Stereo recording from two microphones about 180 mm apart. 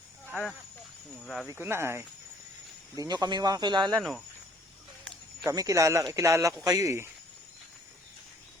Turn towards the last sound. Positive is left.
turn(degrees=-15)  # may be behind; listen again after turning